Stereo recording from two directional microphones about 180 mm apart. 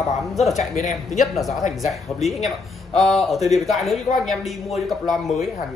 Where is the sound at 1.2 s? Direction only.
Centre (ahead or behind).